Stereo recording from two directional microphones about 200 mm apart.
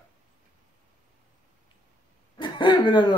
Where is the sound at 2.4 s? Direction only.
25° left (ahead or behind).